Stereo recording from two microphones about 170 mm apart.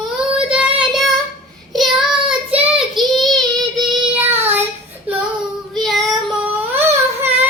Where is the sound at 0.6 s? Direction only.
30° right (ahead or behind).